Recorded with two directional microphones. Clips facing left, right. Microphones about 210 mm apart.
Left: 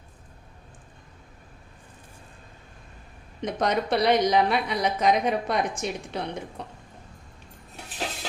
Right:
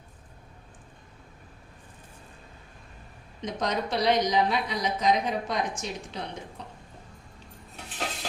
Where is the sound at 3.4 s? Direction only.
60° left (ahead or behind).